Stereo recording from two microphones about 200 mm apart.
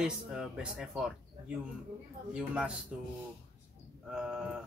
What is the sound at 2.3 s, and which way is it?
Speech, 5° right (ahead or behind).